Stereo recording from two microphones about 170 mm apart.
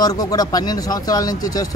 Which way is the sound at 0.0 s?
20° left (ahead or behind).